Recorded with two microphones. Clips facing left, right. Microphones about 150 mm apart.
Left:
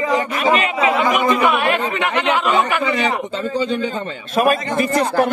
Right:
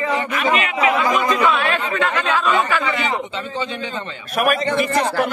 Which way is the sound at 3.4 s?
45° left (ahead or behind).